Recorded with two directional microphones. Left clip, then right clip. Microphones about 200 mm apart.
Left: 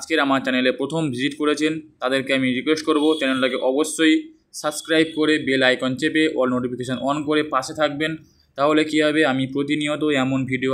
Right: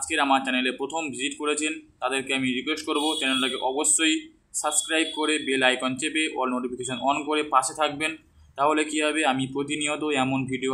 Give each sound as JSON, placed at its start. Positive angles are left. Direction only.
{"t": 0.2, "sound": "speech", "side_deg": 25}